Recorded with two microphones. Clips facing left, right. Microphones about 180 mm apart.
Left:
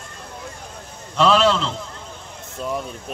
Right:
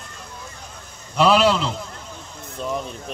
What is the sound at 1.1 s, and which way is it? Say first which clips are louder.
A man's voice: even; 5° right (ahead or behind).